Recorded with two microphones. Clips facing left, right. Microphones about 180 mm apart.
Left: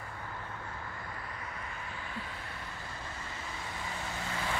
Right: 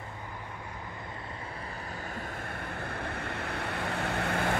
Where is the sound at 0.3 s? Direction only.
15° right (ahead or behind).